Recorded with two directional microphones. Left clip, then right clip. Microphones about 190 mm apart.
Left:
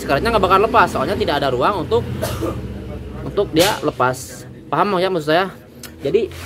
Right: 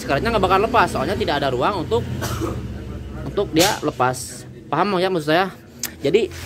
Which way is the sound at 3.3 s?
5° right (ahead or behind).